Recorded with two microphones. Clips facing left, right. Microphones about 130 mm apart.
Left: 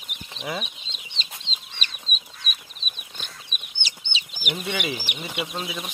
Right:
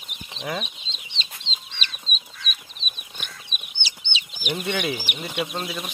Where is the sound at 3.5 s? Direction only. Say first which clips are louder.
Right 1 dB; 45° left (ahead or behind).